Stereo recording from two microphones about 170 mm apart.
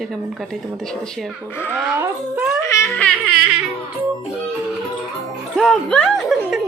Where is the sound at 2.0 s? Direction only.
5° right (ahead or behind).